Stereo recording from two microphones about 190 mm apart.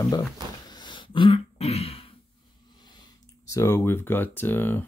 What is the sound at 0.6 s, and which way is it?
Throat clearing, 25° left (ahead or behind).